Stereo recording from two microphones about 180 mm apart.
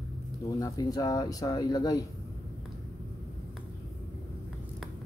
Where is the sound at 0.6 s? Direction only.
20° left (ahead or behind).